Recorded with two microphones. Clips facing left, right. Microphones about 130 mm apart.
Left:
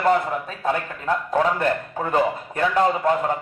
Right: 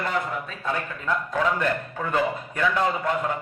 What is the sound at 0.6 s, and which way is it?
A man's voice, 40° left (ahead or behind).